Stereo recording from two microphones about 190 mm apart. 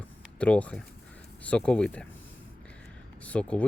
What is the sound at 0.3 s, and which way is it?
Speech, 5° left (ahead or behind).